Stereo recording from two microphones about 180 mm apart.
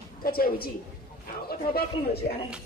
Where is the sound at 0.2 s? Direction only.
55° left (ahead or behind).